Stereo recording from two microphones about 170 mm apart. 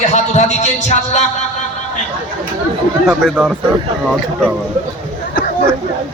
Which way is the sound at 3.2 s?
Centre (ahead or behind).